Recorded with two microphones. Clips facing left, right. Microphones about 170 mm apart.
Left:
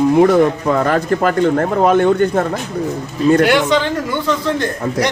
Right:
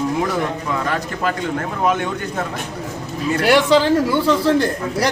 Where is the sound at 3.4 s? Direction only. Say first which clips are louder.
Even; 35° right (ahead or behind).